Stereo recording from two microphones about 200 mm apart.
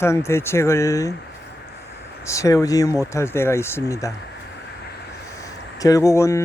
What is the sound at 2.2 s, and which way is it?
Speech, 15° left (ahead or behind).